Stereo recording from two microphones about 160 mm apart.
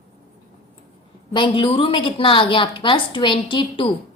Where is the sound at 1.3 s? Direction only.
30° left (ahead or behind).